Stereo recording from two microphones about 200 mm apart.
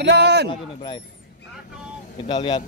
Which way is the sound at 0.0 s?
55° right (ahead or behind).